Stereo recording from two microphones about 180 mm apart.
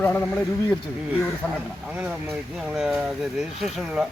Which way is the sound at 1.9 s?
10° right (ahead or behind).